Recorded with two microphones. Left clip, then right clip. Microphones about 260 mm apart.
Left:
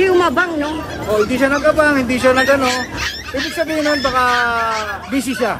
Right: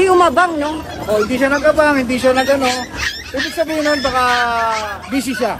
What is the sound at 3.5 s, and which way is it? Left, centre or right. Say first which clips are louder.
Speech: right 1 dB; centre.